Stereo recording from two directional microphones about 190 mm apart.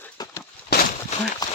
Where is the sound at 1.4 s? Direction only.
20° left (ahead or behind).